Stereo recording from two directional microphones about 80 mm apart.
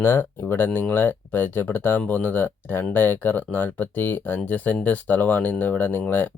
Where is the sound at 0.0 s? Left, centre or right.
Left.